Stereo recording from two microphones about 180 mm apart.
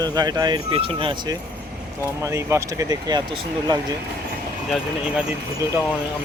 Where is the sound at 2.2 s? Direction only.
15° right (ahead or behind).